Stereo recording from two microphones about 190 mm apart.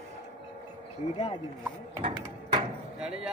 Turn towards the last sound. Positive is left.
turn(degrees=-5)  # may be behind; listen again after turning